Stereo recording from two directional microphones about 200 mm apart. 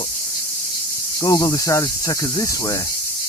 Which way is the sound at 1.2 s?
15° left (ahead or behind).